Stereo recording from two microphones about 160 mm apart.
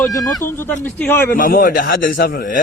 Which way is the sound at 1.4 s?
55° left (ahead or behind).